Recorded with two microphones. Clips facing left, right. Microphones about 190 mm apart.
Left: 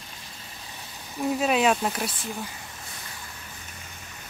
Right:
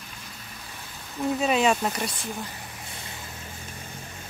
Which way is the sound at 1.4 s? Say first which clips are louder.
Even; centre (ahead or behind).